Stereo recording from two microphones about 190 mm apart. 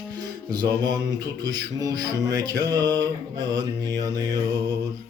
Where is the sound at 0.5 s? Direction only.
20° right (ahead or behind).